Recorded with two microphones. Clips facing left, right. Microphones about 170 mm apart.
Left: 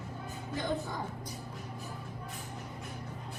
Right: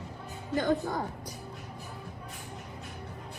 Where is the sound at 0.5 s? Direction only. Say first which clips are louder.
Right 7 dB; 65° right (ahead or behind).